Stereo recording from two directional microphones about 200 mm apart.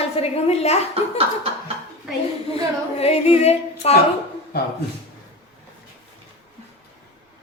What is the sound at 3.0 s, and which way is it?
Speech, 30° left (ahead or behind).